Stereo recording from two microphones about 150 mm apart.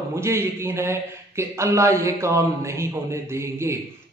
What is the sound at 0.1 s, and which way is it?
A man's voice, 20° right (ahead or behind).